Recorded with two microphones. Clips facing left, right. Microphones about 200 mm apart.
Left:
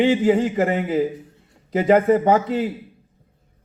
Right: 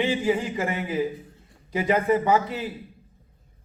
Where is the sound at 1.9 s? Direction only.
45° left (ahead or behind).